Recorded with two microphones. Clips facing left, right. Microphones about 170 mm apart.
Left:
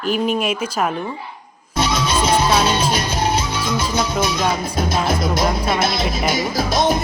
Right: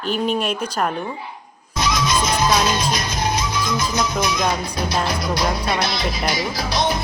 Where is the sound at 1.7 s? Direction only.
30° left (ahead or behind).